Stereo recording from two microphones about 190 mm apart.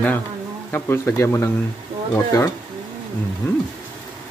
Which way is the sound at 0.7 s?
10° left (ahead or behind).